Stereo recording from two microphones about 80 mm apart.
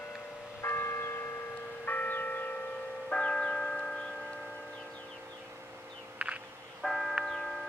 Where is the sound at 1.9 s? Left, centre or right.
Left.